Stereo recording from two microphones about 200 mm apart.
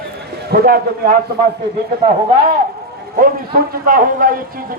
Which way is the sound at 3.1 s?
45° right (ahead or behind).